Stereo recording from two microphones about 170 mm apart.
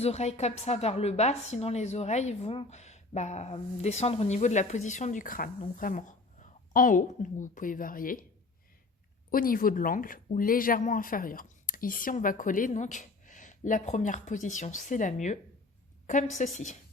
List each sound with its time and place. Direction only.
0.0 s a woman's voice: 40° left (ahead or behind); by 8.2 s 55° left (ahead or behind)
9.3 s a woman's voice: 55° left (ahead or behind)